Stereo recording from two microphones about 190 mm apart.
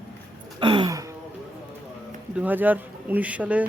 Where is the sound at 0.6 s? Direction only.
25° right (ahead or behind).